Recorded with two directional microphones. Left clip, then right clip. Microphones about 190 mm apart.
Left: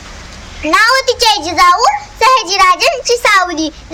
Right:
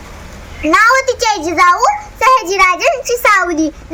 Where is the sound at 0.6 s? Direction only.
5° left (ahead or behind).